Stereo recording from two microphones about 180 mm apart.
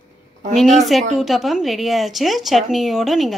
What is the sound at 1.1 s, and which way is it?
Speech, centre (ahead or behind).